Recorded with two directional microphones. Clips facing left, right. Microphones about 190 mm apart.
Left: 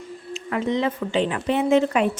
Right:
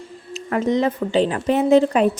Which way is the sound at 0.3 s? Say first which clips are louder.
Right 4 dB; 40° right (ahead or behind).